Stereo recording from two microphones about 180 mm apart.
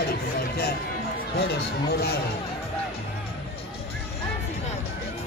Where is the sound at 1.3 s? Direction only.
70° left (ahead or behind).